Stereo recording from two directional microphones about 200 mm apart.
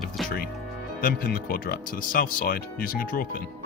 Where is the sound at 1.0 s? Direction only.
45° left (ahead or behind).